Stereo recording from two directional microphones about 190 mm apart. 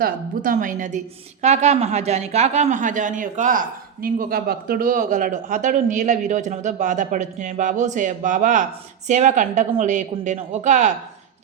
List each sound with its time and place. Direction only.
0.0 s a woman's voice: 45° right (ahead or behind)